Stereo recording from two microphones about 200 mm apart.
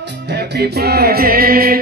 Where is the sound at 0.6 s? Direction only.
50° right (ahead or behind).